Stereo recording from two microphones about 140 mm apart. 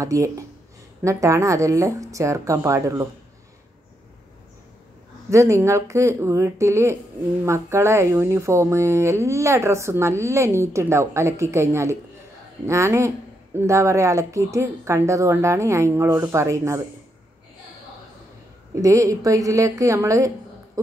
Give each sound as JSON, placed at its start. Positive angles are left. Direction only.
{"t": 0.0, "sound": "speech", "side_deg": -20}
{"t": 5.3, "sound": "speech", "side_deg": -20}
{"t": 18.8, "sound": "speech", "side_deg": -25}